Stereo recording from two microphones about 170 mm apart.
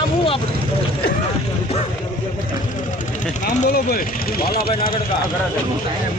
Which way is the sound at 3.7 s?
60° left (ahead or behind).